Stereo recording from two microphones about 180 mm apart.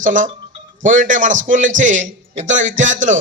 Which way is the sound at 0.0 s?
45° right (ahead or behind).